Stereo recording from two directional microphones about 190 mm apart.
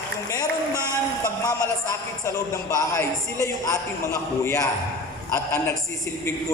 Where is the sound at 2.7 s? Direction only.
15° left (ahead or behind).